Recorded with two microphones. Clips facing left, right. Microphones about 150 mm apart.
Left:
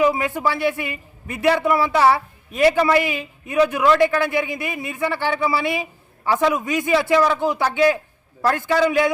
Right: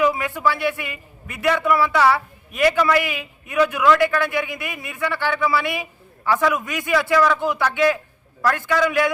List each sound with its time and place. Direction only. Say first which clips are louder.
0.0 s a woman's voice: left 1 dB; 30° left (ahead or behind)